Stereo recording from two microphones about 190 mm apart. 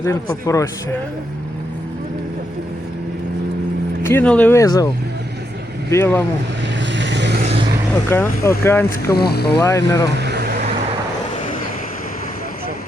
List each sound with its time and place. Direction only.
0.0 s speech: 15° left (ahead or behind)
4.0 s speech: 10° left (ahead or behind)
5.9 s speech: 10° left (ahead or behind)
6.9 s vehicle: 70° right (ahead or behind)
8.1 s speech: 10° left (ahead or behind)
9.1 s speech: 55° left (ahead or behind)
9.6 s speech: 15° left (ahead or behind)
10.2 s vehicle: 60° right (ahead or behind)